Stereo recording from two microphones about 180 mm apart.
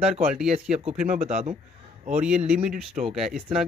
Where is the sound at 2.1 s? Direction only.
5° right (ahead or behind).